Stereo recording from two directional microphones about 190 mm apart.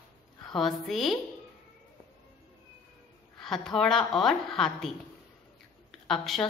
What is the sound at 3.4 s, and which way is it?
A woman's voice, centre (ahead or behind).